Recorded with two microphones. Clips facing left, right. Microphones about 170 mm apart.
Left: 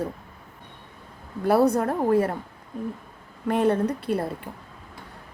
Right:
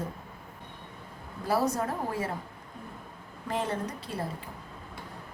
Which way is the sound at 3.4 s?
60° left (ahead or behind).